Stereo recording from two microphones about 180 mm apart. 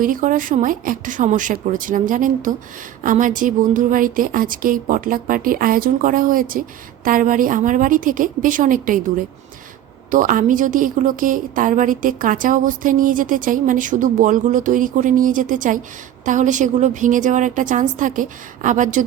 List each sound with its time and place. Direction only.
0.0 s a woman's voice: 50° right (ahead or behind)
10.1 s a woman's voice: 50° right (ahead or behind)